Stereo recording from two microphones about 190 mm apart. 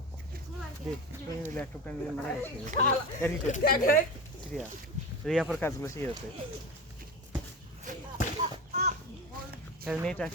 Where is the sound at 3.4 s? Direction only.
45° left (ahead or behind).